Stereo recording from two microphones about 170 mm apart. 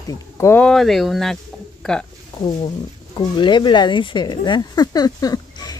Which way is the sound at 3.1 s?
25° left (ahead or behind).